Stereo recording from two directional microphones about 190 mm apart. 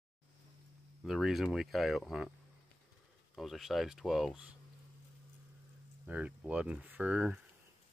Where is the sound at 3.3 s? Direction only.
Centre (ahead or behind).